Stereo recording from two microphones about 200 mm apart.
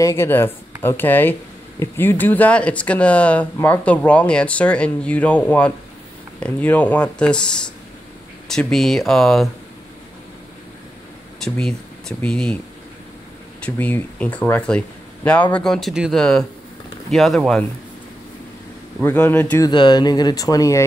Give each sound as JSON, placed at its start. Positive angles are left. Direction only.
{"t": 0.0, "sound": "speech", "side_deg": 10}
{"t": 11.3, "sound": "speech", "side_deg": 5}
{"t": 13.7, "sound": "speech", "side_deg": 10}
{"t": 18.9, "sound": "speech", "side_deg": 10}
{"t": 19.7, "sound": "speech", "side_deg": 20}